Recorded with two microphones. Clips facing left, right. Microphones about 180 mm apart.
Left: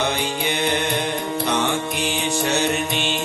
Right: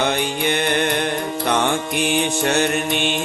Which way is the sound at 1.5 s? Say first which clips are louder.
Right 4 dB; 55° right (ahead or behind).